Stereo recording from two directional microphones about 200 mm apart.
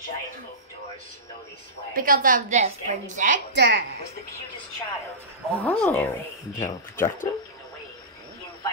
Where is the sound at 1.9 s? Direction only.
45° right (ahead or behind).